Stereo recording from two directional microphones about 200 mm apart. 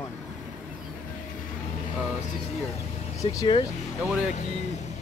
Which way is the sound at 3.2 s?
20° left (ahead or behind).